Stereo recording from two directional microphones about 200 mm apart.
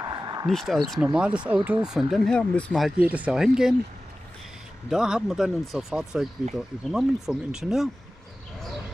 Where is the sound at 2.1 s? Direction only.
5° left (ahead or behind).